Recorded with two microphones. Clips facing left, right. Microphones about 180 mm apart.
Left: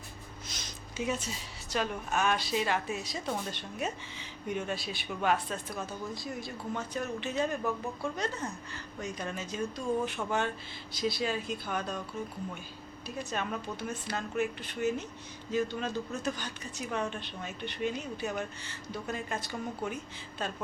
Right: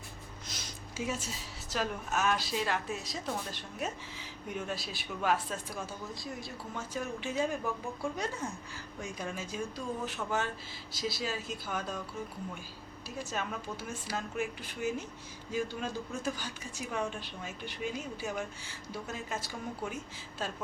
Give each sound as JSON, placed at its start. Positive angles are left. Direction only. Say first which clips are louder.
{"t": 0.5, "sound": "a sound", "louder": "right 1 dB", "side_deg": -5}
{"t": 1.0, "sound": "speech", "louder": "left 3 dB", "side_deg": 0}
{"t": 13.1, "sound": "speech", "louder": "left 2 dB", "side_deg": -5}